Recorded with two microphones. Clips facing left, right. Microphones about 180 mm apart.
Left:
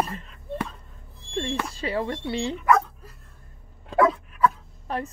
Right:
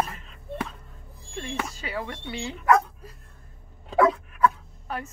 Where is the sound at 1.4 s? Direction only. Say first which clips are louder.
Left 4 dB; 30° left (ahead or behind).